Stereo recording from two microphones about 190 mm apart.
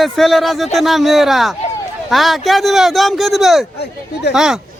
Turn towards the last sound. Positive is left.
turn(degrees=-5)  # may be behind; listen again after turning